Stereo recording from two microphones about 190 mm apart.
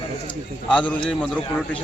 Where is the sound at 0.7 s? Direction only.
5° left (ahead or behind).